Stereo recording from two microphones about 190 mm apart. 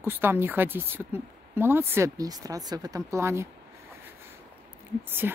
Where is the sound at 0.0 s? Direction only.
10° right (ahead or behind).